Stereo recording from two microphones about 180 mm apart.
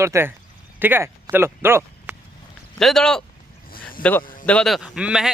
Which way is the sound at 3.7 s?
50° left (ahead or behind).